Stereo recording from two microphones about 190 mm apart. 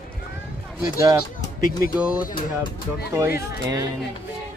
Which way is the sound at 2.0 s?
5° right (ahead or behind).